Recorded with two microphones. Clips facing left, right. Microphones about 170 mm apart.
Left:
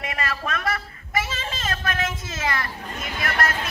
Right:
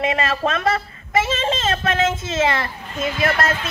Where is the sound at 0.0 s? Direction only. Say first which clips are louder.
Right 9 dB; 25° right (ahead or behind).